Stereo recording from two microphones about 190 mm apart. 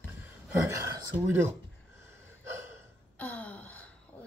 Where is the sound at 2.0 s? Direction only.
15° right (ahead or behind).